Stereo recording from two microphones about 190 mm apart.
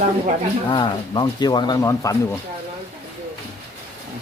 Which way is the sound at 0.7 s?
25° left (ahead or behind).